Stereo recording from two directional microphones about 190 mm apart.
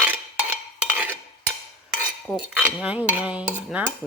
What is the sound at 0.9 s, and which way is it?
Cutlery, 10° right (ahead or behind).